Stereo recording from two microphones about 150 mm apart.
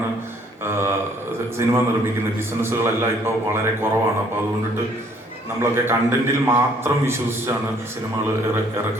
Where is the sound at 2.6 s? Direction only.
15° right (ahead or behind).